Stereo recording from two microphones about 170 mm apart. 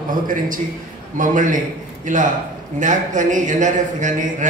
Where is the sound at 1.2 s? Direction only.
50° right (ahead or behind).